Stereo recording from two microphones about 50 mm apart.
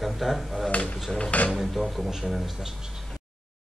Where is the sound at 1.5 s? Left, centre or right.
Centre.